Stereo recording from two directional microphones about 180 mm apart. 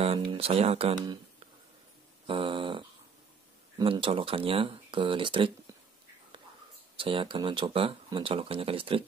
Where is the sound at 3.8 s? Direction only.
30° right (ahead or behind).